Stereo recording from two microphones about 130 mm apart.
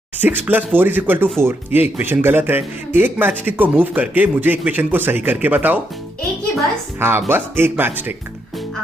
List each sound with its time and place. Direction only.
0.2 s speech: 15° right (ahead or behind)
7.0 s speech: 15° right (ahead or behind)